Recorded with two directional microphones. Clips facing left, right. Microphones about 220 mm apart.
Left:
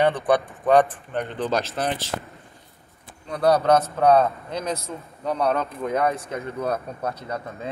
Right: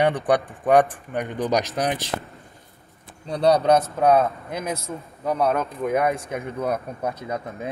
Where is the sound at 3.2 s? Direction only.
30° right (ahead or behind).